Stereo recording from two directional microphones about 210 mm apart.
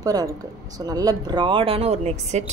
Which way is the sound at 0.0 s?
15° right (ahead or behind).